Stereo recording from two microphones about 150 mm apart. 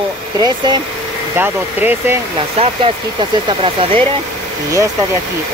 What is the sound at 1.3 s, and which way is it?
Speech, 15° right (ahead or behind).